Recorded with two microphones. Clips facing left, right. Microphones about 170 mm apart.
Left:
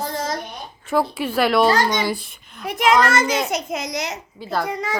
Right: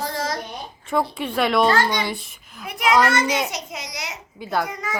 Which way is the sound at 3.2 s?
Centre (ahead or behind).